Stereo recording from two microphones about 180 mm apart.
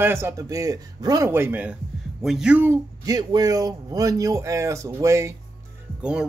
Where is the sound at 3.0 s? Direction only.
20° right (ahead or behind).